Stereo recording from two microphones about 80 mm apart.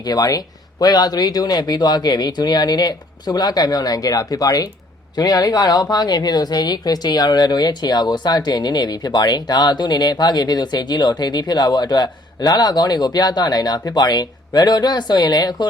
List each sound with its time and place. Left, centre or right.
0.0 s speech: left